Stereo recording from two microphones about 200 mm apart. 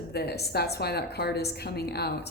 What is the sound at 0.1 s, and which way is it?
A woman's voice, 55° left (ahead or behind).